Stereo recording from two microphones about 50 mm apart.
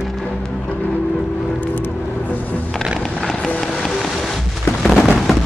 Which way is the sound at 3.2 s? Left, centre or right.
Centre.